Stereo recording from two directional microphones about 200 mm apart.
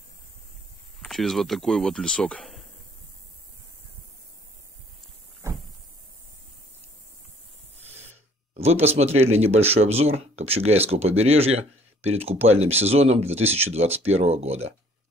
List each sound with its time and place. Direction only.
1.0 s speech: centre (ahead or behind)
8.5 s speech: 30° right (ahead or behind)